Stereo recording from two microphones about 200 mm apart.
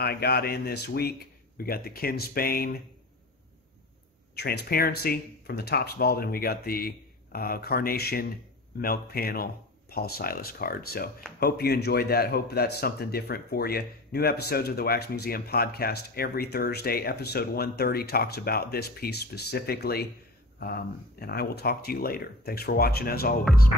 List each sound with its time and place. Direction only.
0.0 s speech: 55° left (ahead or behind)
4.4 s speech: 55° left (ahead or behind)